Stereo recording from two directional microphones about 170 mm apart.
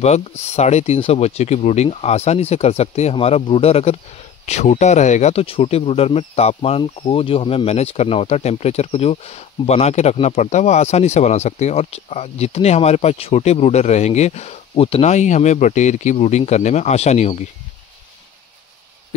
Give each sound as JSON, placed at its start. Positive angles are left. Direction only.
{"t": 0.5, "sound": "speech", "side_deg": 40}